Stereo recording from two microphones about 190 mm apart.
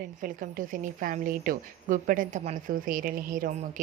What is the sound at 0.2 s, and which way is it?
A woman's voice, 45° right (ahead or behind).